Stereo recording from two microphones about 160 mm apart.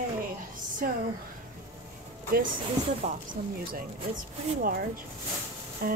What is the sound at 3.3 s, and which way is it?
Speech, 65° right (ahead or behind).